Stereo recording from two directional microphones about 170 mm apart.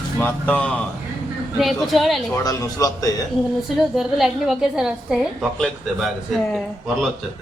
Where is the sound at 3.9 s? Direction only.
Centre (ahead or behind).